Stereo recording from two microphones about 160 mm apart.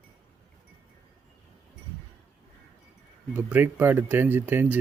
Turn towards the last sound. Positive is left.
turn(degrees=-10)  # may be behind; listen again after turning